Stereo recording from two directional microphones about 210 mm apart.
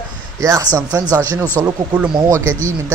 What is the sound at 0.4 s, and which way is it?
Speech, 15° right (ahead or behind).